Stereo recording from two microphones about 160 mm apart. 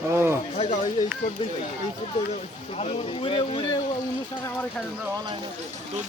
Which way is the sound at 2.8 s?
35° left (ahead or behind).